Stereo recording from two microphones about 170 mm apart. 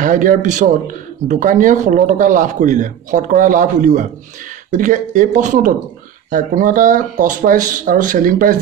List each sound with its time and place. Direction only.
0.0 s speech: 50° right (ahead or behind)